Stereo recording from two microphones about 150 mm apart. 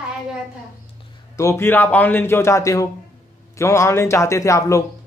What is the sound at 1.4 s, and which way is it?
A man's voice, 15° left (ahead or behind).